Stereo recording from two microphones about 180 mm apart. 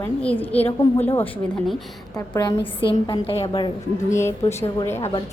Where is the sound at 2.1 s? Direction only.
20° left (ahead or behind).